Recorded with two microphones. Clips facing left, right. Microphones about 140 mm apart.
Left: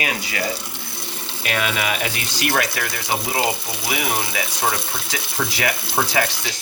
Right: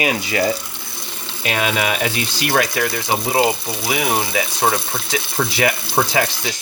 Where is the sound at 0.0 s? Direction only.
25° right (ahead or behind).